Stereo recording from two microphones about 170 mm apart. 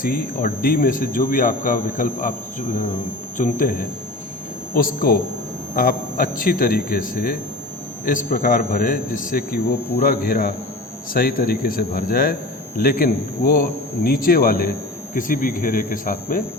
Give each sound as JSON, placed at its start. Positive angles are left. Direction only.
{"t": 0.0, "sound": "a man's voice", "side_deg": 55}